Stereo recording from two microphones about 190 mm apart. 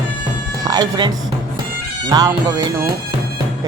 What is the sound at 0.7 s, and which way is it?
Speech, 20° right (ahead or behind).